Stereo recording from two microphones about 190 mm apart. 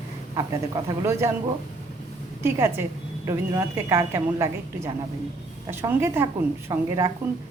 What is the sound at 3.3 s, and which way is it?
A woman's voice, 15° right (ahead or behind).